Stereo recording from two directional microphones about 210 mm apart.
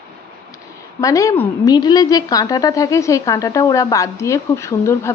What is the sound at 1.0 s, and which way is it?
Speech, 15° left (ahead or behind).